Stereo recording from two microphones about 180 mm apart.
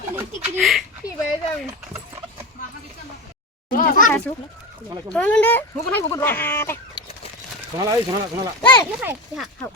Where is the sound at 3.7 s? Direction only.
50° left (ahead or behind).